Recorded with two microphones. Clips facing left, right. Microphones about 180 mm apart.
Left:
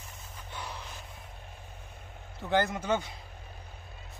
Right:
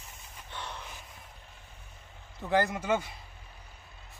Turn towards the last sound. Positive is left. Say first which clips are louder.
# right 1 dB
turn(degrees=0)  # may be behind; listen again after turning